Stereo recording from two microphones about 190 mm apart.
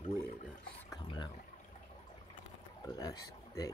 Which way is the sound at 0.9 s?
25° left (ahead or behind).